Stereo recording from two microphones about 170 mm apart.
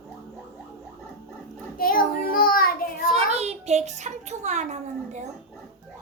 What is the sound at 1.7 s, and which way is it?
Child singing, 60° left (ahead or behind).